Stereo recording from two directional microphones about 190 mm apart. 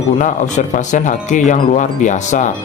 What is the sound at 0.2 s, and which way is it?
Speech, 40° left (ahead or behind).